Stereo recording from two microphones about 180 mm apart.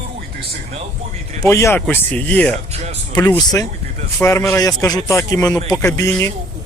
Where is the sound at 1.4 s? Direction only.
15° left (ahead or behind).